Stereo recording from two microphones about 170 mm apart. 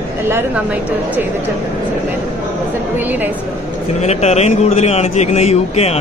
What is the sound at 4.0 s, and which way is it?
A man's voice, 40° left (ahead or behind).